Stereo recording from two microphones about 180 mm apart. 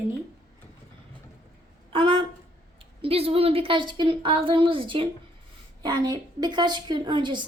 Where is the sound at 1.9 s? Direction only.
30° right (ahead or behind).